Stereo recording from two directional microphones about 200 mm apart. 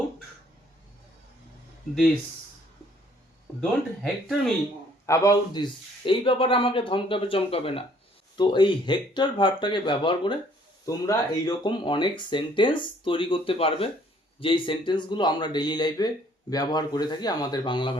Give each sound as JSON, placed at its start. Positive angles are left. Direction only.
{"t": 3.6, "sound": "speech", "side_deg": 0}
{"t": 5.0, "sound": "speech", "side_deg": 15}